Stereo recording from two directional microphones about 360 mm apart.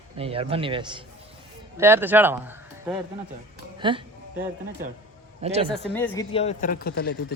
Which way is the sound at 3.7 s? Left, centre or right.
Centre.